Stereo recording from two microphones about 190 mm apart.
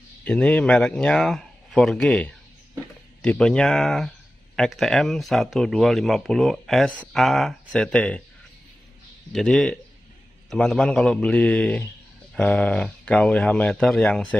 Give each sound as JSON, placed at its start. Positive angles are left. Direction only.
{"t": 0.2, "sound": "speech", "side_deg": 5}
{"t": 9.3, "sound": "speech", "side_deg": 0}